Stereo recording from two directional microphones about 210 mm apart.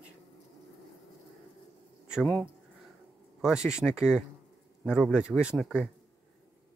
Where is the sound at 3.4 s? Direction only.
5° right (ahead or behind).